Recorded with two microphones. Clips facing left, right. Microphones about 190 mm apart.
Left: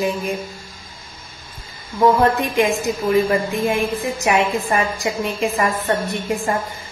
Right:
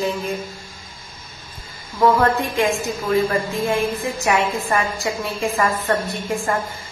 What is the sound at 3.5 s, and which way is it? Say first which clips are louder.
A woman's voice: left 1 dB; 15° left (ahead or behind).